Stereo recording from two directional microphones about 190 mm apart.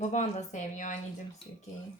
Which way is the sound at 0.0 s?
40° left (ahead or behind).